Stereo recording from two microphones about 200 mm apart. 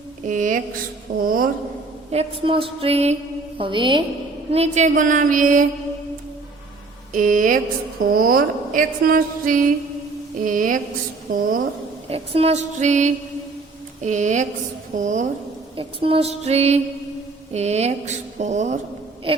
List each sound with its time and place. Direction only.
0.3 s a woman's voice: 40° right (ahead or behind)
2.1 s a sound: 25° right (ahead or behind)
4.5 s speech: 35° right (ahead or behind)
7.1 s a woman's voice: 40° right (ahead or behind)
12.0 s speech: 30° right (ahead or behind)
15.7 s speech: 25° right (ahead or behind)